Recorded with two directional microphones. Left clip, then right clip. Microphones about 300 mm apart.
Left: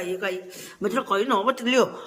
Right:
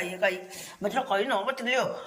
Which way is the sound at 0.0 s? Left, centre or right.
Centre.